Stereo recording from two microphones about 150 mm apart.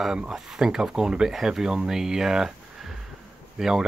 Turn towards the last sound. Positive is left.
turn(degrees=-5)  # may be behind; listen again after turning